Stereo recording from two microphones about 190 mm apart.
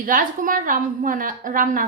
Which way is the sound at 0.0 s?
45° right (ahead or behind).